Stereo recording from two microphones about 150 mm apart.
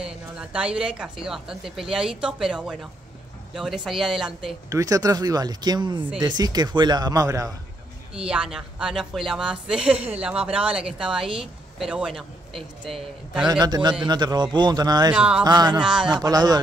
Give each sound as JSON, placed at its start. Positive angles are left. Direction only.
{"t": 0.0, "sound": "speech", "side_deg": -5}
{"t": 4.6, "sound": "a man's voice", "side_deg": -20}
{"t": 8.1, "sound": "speech", "side_deg": -5}
{"t": 9.9, "sound": "speech", "side_deg": -40}
{"t": 10.2, "sound": "speech", "side_deg": -5}
{"t": 13.5, "sound": "a man's voice", "side_deg": -30}
{"t": 15.0, "sound": "speech", "side_deg": -5}
{"t": 15.4, "sound": "a man's voice", "side_deg": -30}
{"t": 15.8, "sound": "speech", "side_deg": -5}
{"t": 16.1, "sound": "a man's voice", "side_deg": -25}